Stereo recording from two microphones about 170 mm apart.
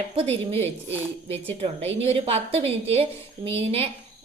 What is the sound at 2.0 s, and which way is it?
A woman's voice, 35° right (ahead or behind).